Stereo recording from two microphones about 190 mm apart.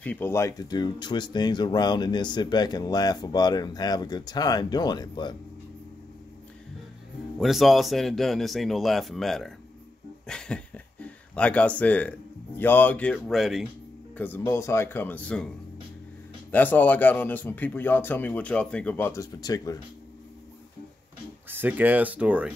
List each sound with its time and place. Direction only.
0.0 s speech: 10° left (ahead or behind)
7.3 s speech: centre (ahead or behind)
14.1 s speech: 10° left (ahead or behind)
16.4 s speech: 10° left (ahead or behind)
21.5 s speech: 10° right (ahead or behind)